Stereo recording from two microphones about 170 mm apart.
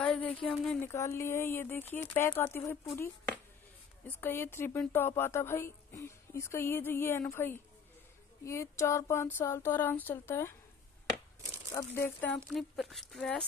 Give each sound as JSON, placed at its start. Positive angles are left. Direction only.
{"t": 0.0, "sound": "a sound", "side_deg": 5}
{"t": 0.7, "sound": "speech", "side_deg": 15}
{"t": 4.2, "sound": "speech", "side_deg": 15}
{"t": 11.5, "sound": "speech", "side_deg": 15}